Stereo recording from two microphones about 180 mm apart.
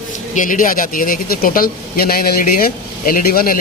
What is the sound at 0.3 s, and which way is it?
Speech, 45° left (ahead or behind).